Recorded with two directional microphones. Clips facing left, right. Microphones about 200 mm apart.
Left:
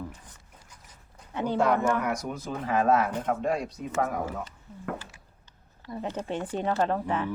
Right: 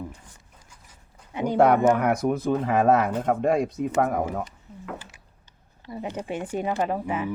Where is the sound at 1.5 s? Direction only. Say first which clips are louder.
Right 7 dB; 60° right (ahead or behind).